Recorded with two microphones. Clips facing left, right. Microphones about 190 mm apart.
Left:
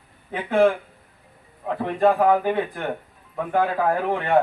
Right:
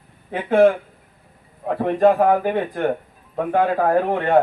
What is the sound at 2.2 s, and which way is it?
Speech, 40° right (ahead or behind).